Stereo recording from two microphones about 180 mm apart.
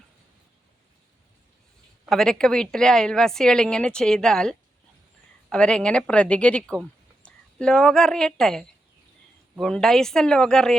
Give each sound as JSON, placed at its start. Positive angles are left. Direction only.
{"t": 2.0, "sound": "a woman's voice", "side_deg": 5}